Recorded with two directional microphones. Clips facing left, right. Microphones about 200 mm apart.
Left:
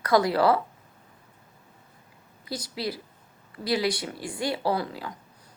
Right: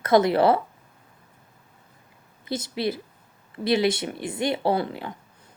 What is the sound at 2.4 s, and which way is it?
Speech, 25° right (ahead or behind).